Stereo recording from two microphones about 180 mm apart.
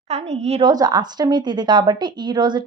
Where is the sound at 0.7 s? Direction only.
20° right (ahead or behind).